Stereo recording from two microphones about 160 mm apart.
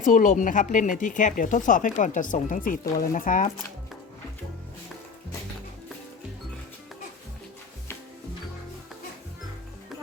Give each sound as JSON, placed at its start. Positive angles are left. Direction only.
{"t": 0.0, "sound": "speech", "side_deg": 55}